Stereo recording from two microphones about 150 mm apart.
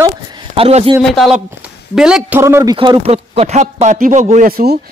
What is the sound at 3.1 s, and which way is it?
Speech, 45° right (ahead or behind).